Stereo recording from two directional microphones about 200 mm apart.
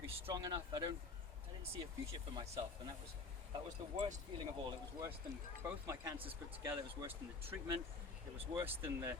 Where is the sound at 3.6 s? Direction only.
35° right (ahead or behind).